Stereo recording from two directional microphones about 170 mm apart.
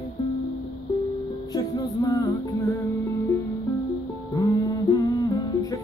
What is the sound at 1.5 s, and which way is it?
Music, 20° left (ahead or behind).